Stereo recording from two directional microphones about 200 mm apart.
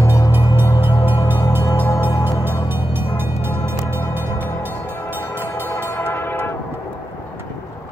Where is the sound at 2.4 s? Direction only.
10° right (ahead or behind).